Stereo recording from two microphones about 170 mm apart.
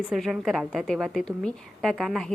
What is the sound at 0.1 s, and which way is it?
A woman's voice, centre (ahead or behind).